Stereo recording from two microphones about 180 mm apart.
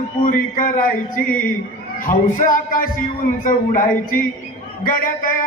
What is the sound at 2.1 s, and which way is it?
A man's voice, 50° left (ahead or behind).